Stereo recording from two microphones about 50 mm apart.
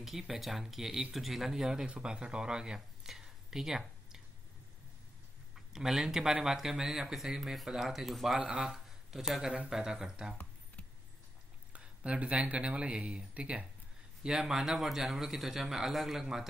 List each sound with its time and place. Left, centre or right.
0.0 s speech: centre
5.5 s speech: centre
8.4 s speech: centre
11.7 s speech: right
14.2 s speech: centre